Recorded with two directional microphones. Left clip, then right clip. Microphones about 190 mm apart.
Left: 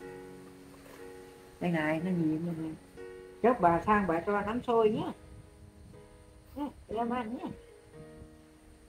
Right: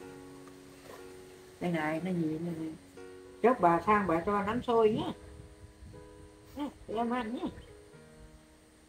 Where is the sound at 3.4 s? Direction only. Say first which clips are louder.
Even; 10° left (ahead or behind).